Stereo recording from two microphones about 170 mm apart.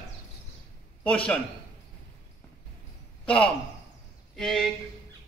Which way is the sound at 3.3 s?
5° left (ahead or behind).